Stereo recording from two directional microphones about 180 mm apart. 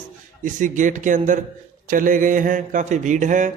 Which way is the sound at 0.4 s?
45° right (ahead or behind).